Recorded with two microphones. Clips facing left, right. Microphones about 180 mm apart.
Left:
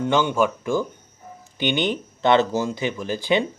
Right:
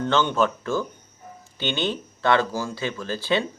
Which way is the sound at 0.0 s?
10° left (ahead or behind).